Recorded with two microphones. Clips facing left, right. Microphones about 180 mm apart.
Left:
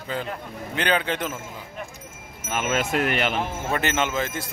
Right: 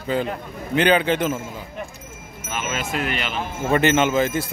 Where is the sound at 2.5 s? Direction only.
55° left (ahead or behind).